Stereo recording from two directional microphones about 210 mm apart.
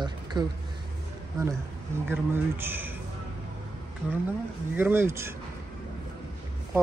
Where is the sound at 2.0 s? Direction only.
10° right (ahead or behind).